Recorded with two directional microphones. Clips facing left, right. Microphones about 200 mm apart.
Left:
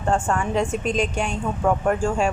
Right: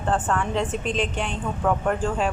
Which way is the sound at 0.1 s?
10° left (ahead or behind).